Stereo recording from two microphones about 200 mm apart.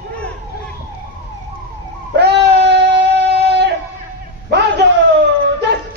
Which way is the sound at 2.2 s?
55° right (ahead or behind).